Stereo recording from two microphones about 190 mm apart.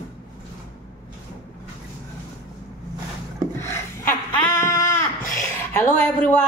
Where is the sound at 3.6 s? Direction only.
15° left (ahead or behind).